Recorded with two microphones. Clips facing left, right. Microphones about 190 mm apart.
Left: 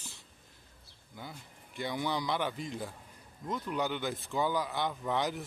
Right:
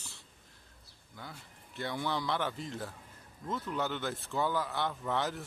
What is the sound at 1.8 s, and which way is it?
Speech, 10° left (ahead or behind).